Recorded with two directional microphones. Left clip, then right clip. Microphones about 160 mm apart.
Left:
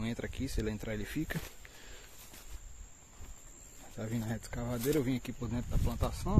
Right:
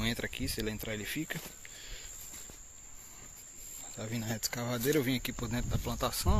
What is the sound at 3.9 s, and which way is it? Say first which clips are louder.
Speech: even; 25° left (ahead or behind).